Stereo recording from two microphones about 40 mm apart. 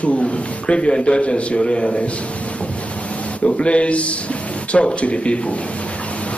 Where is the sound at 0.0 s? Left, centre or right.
Left.